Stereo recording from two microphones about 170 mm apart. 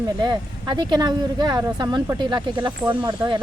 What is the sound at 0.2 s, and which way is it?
A woman's voice, 25° right (ahead or behind).